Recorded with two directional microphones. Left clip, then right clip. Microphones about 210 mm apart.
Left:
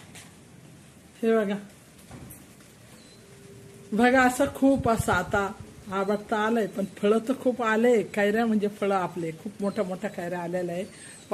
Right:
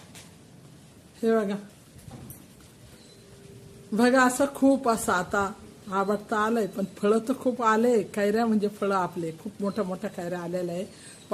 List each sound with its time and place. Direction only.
1.2 s speech: 5° right (ahead or behind)
3.9 s speech: 5° right (ahead or behind)